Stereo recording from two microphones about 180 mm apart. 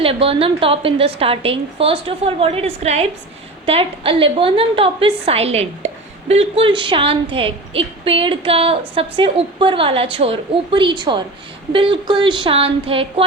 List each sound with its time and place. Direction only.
0.0 s a woman's voice: 30° right (ahead or behind)